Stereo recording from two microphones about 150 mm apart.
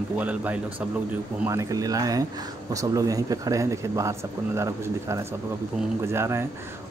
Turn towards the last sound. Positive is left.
turn(degrees=-15)  # may be behind; listen again after turning